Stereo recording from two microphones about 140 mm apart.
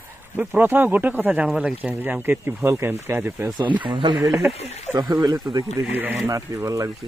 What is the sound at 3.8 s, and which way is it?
Speech, 35° right (ahead or behind).